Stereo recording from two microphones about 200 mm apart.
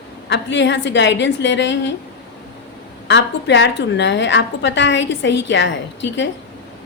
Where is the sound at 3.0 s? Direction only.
65° left (ahead or behind).